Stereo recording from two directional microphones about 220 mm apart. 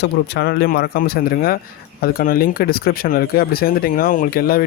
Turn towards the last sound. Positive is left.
turn(degrees=40)  # may be behind; listen again after turning